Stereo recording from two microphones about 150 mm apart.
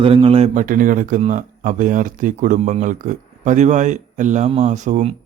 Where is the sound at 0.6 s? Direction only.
65° right (ahead or behind).